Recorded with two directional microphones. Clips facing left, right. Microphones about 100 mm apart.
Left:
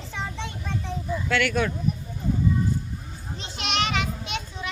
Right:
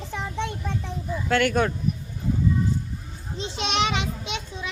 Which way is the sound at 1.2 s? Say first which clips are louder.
Right 3 dB; 45° right (ahead or behind).